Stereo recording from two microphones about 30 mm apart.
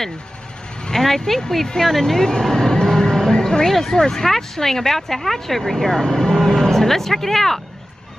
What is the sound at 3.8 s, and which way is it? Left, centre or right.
Speech, left.